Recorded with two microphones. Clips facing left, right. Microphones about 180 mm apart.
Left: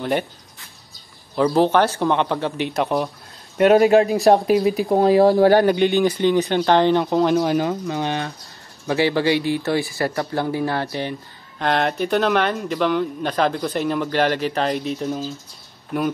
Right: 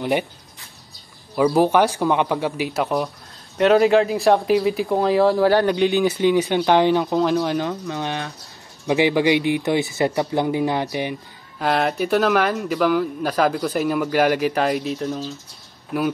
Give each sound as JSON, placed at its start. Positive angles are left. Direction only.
{"t": 0.0, "sound": "speech", "side_deg": -10}
{"t": 1.3, "sound": "speech", "side_deg": -10}
{"t": 3.5, "sound": "speech", "side_deg": 45}
{"t": 5.7, "sound": "speech", "side_deg": 0}
{"t": 7.1, "sound": "speech", "side_deg": 5}
{"t": 8.8, "sound": "speech", "side_deg": -15}
{"t": 11.5, "sound": "speech", "side_deg": -5}